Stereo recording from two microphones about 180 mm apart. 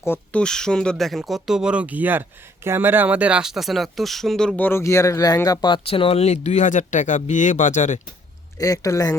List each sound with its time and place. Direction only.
0.0 s speech: 10° left (ahead or behind); by 8.0 s 40° left (ahead or behind)
8.5 s speech: 20° left (ahead or behind)